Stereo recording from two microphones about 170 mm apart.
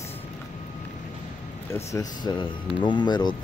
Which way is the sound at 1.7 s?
15° left (ahead or behind).